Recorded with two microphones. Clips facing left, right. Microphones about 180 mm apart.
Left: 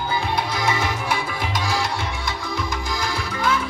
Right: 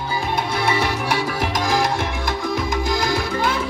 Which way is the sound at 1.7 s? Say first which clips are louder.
Right 6 dB; 50° right (ahead or behind).